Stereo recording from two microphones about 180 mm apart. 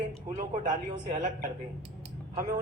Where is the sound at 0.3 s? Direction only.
40° right (ahead or behind).